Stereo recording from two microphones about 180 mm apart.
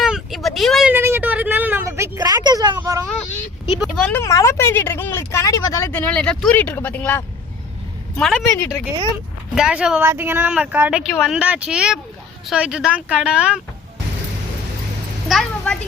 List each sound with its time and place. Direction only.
0.0 s vehicle: centre (ahead or behind)
0.9 s a sound: 15° right (ahead or behind)
2.7 s vehicle: 20° right (ahead or behind)
3.8 s speech: 5° left (ahead or behind)
8.4 s speech: 10° left (ahead or behind)
9.6 s speech: 5° right (ahead or behind)
15.3 s a woman's voice: 5° left (ahead or behind)